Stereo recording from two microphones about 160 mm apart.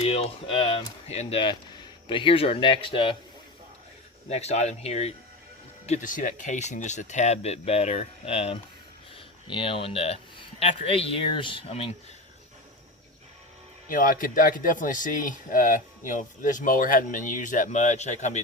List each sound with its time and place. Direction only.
0.0 s speech: 40° left (ahead or behind)
4.3 s speech: 40° left (ahead or behind)
13.8 s speech: 60° left (ahead or behind)